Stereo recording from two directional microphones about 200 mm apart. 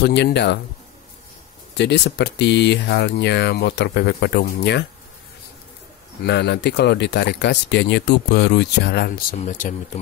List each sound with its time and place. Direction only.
0.0 s speech: 60° left (ahead or behind)
1.8 s speech: 60° left (ahead or behind)
6.2 s speech: 60° left (ahead or behind)
9.4 s speech: 40° left (ahead or behind)